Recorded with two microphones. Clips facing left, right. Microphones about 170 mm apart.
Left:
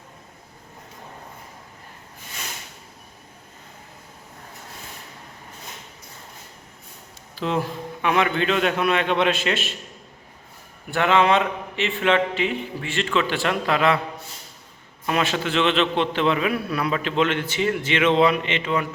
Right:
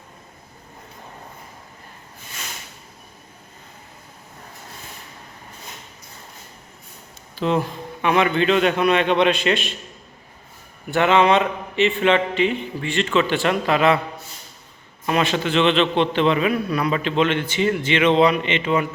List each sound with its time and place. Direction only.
7.3 s a man's voice: centre (ahead or behind)
10.9 s a man's voice: centre (ahead or behind)
15.0 s a man's voice: centre (ahead or behind)